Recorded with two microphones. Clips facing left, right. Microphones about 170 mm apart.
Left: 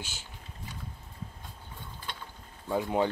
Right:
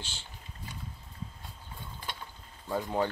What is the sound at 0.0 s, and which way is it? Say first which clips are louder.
Speech: left 2 dB; 10° left (ahead or behind).